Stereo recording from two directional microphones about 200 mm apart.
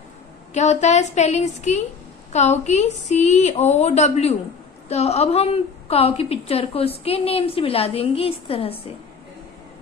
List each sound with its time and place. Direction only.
0.5 s a woman's voice: 35° left (ahead or behind)